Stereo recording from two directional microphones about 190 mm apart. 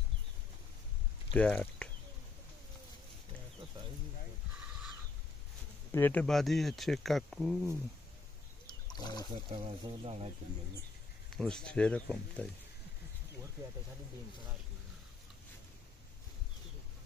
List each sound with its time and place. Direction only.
1.3 s speech: 5° left (ahead or behind)
5.9 s speech: 10° left (ahead or behind)
8.6 s a sound: 20° left (ahead or behind)
9.5 s speech: 30° right (ahead or behind)
11.3 s speech: 5° left (ahead or behind)